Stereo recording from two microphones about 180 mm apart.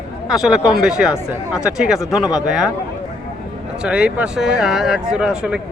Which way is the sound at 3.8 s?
5° right (ahead or behind).